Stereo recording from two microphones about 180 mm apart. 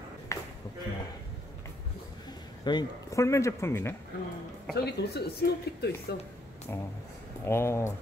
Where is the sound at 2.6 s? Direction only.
20° left (ahead or behind).